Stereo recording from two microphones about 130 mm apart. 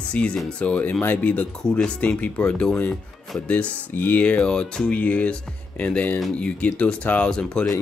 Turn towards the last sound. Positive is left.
turn(degrees=5)  # may be behind; listen again after turning